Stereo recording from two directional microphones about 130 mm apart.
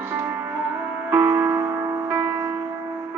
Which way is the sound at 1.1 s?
15° right (ahead or behind).